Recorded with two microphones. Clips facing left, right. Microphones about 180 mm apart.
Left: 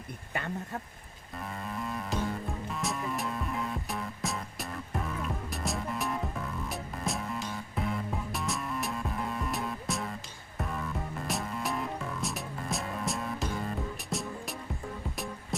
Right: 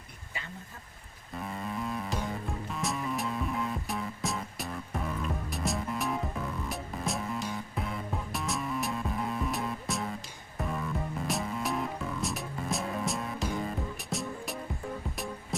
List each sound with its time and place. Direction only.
0.3 s speech: 60° left (ahead or behind)
1.4 s music: centre (ahead or behind)
11.3 s music: centre (ahead or behind)